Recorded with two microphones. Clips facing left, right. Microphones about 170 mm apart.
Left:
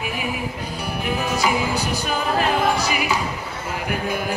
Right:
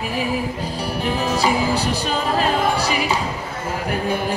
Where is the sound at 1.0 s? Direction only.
30° right (ahead or behind).